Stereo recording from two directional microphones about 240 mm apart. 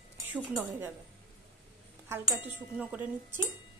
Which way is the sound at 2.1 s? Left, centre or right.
Centre.